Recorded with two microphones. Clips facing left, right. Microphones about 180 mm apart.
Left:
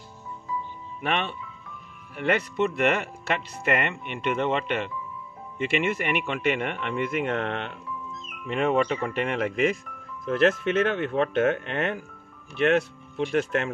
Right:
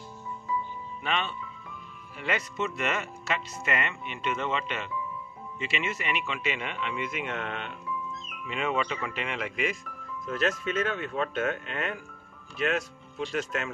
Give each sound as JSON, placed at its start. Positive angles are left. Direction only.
{"t": 1.0, "sound": "speech", "side_deg": 60}